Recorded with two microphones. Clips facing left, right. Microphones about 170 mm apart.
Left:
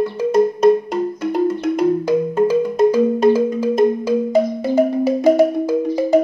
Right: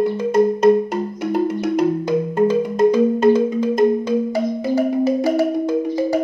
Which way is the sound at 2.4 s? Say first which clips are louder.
Even; 5° left (ahead or behind).